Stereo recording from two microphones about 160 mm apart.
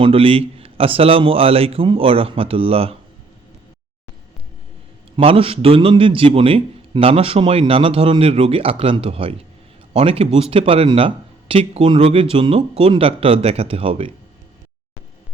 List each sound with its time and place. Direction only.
0.0 s a man's voice: 35° right (ahead or behind)
5.1 s a man's voice: 35° right (ahead or behind)